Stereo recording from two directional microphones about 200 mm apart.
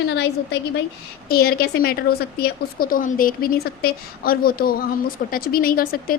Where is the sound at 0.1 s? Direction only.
55° left (ahead or behind).